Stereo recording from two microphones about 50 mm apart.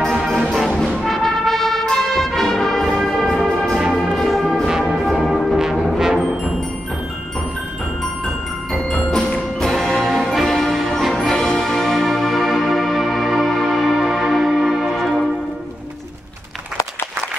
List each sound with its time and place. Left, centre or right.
0.1 s music: centre
0.7 s music: centre
8.7 s tubular bells: centre
9.6 s music: centre